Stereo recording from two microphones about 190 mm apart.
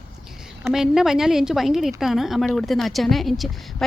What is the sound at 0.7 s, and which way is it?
A woman's voice, 5° right (ahead or behind).